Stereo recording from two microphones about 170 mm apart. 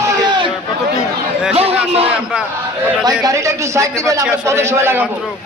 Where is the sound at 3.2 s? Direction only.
15° right (ahead or behind).